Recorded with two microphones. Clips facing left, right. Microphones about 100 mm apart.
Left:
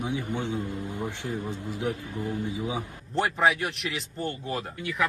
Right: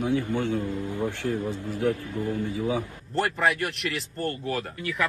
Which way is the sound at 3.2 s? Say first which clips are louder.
Even; centre (ahead or behind).